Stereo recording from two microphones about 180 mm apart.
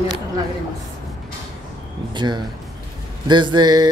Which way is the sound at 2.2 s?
25° right (ahead or behind).